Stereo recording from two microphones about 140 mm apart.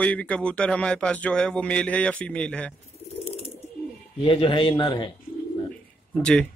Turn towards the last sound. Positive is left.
turn(degrees=5)  # may be behind; listen again after turning